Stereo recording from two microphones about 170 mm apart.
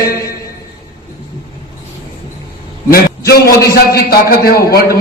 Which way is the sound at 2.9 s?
65° left (ahead or behind).